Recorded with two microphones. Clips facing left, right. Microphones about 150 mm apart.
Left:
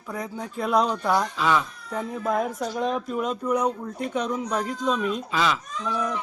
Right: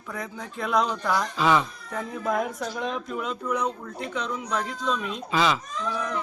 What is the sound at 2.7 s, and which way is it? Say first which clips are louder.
Speech: left 6 dB; 35° left (ahead or behind).